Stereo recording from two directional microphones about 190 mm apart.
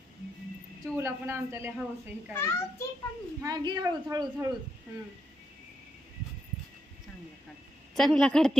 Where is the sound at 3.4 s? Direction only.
20° right (ahead or behind).